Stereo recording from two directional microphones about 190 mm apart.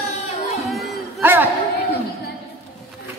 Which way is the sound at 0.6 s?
Centre (ahead or behind).